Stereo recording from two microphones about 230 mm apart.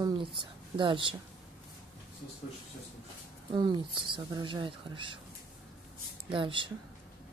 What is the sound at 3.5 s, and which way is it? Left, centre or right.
Speech, centre.